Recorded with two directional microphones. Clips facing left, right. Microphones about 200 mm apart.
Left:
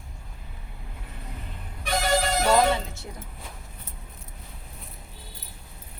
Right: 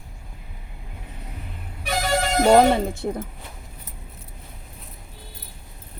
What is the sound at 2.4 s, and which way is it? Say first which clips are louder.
Speech: right 9 dB; 50° right (ahead or behind).